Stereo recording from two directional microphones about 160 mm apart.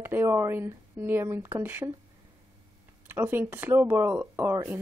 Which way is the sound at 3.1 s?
15° right (ahead or behind).